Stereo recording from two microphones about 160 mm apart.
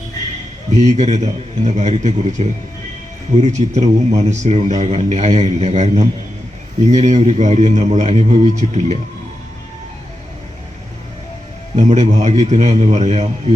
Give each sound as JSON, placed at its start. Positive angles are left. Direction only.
{"t": 0.8, "sound": "speech", "side_deg": -45}
{"t": 11.8, "sound": "speech", "side_deg": -45}